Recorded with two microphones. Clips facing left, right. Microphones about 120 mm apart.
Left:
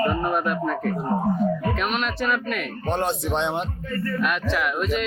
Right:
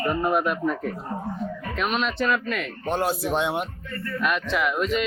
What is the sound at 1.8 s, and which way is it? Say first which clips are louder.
Speech: even; centre (ahead or behind).